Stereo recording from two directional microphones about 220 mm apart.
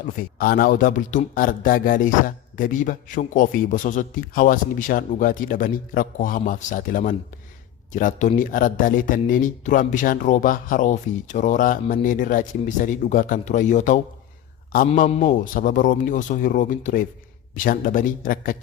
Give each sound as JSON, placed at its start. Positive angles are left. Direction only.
{"t": 0.2, "sound": "speech", "side_deg": 40}